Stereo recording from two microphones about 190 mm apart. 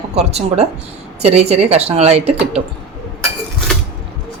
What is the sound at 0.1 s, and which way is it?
A woman's voice, 35° right (ahead or behind).